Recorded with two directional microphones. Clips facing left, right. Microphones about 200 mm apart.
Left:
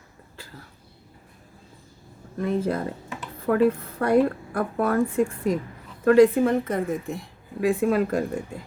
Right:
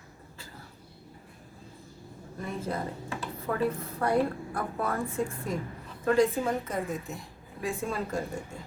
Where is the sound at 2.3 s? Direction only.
65° left (ahead or behind).